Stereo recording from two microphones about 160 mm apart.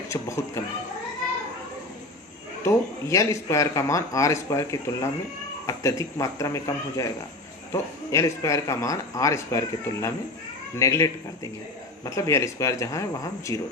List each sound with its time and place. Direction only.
0.1 s speech: 20° left (ahead or behind)
2.6 s speech: 20° left (ahead or behind)